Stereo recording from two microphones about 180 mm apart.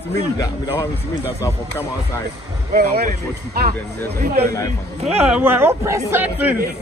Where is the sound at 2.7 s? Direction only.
55° right (ahead or behind).